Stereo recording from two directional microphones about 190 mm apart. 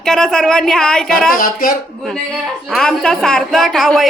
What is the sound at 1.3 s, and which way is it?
Speech, 50° left (ahead or behind).